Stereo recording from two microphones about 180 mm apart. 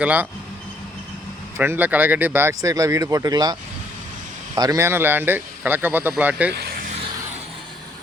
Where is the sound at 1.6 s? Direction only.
10° right (ahead or behind).